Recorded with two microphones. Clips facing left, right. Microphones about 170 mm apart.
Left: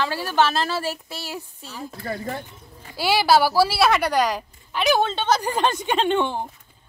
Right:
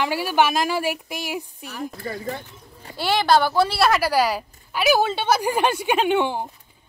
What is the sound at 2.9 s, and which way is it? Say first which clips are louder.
A woman's voice: even; 5° left (ahead or behind).